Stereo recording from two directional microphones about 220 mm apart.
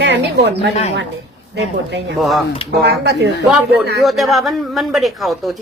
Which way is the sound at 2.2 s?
Centre (ahead or behind).